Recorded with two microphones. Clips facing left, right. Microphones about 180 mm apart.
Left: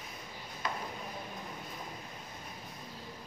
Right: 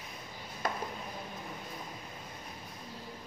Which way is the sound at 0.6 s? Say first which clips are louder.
Right 3 dB; 50° right (ahead or behind).